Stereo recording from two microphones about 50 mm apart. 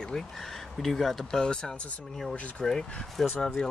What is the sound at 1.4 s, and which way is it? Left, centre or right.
Speech, centre.